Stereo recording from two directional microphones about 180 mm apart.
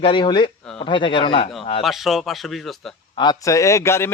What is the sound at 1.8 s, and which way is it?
Speech, centre (ahead or behind).